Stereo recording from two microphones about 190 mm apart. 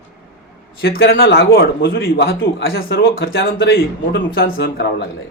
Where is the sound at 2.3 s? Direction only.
90° left.